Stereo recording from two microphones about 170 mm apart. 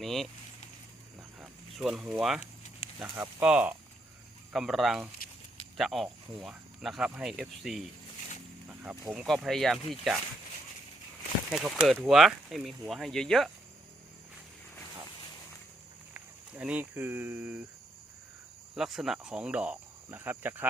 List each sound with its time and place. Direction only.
0.0 s speech: centre (ahead or behind)
1.4 s a sound: 5° right (ahead or behind)
2.4 s a sound: 40° left (ahead or behind)
3.0 s speech: 5° right (ahead or behind)
11.5 s speech: centre (ahead or behind)
16.1 s speech: 5° right (ahead or behind)
18.8 s speech: centre (ahead or behind)